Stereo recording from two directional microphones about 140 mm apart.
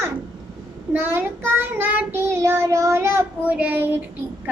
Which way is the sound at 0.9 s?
15° right (ahead or behind).